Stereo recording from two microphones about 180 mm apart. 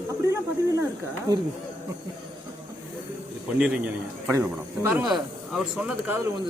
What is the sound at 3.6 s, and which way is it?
A man's voice, 5° right (ahead or behind).